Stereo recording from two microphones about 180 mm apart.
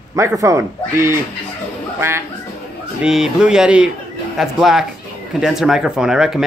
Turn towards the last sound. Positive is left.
turn(degrees=-5)  # may be behind; listen again after turning